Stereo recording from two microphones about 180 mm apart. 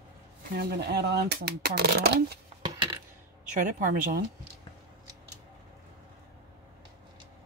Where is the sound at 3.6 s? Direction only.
45° right (ahead or behind).